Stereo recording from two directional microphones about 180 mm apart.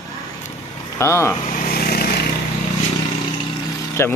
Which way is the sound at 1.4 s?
50° left (ahead or behind).